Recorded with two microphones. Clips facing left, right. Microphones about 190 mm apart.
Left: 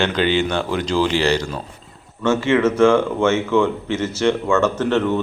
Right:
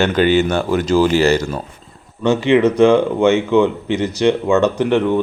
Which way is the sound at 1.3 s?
5° right (ahead or behind).